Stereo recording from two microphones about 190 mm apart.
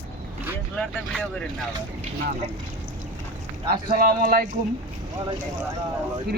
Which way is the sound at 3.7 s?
50° right (ahead or behind).